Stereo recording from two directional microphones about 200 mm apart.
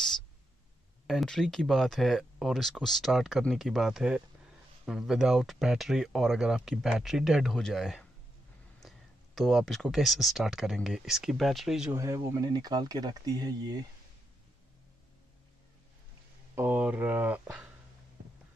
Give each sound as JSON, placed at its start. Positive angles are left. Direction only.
{"t": 1.0, "sound": "speech", "side_deg": 0}
{"t": 11.9, "sound": "speech", "side_deg": -15}
{"t": 16.5, "sound": "speech", "side_deg": -10}